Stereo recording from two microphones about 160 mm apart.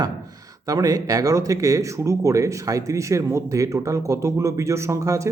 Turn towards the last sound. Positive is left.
turn(degrees=-20)  # may be behind; listen again after turning